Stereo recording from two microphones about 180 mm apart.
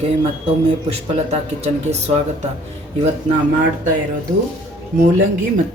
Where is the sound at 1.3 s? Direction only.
35° right (ahead or behind).